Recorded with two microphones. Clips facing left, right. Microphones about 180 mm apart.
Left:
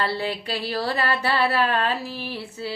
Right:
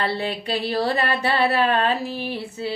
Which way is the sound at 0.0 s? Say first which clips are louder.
Right 1 dB; 20° right (ahead or behind).